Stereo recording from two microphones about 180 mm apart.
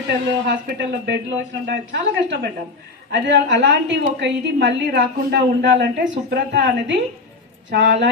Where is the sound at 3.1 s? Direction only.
85° right.